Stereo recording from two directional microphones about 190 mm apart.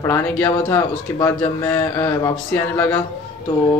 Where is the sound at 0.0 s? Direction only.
15° left (ahead or behind).